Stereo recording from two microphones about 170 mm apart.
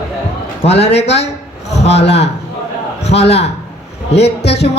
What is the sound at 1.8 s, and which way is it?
Speech, 90° left.